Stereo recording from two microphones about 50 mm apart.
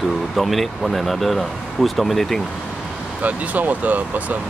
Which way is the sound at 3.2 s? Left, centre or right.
Right.